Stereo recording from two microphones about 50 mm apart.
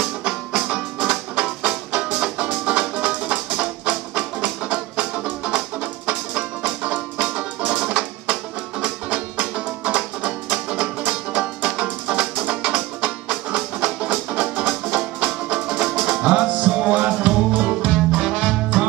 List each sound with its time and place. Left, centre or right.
0.2 s music: centre